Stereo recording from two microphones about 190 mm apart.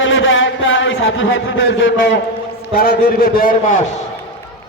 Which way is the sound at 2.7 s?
50° left (ahead or behind).